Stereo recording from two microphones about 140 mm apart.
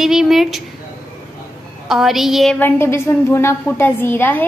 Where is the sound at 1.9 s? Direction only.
Centre (ahead or behind).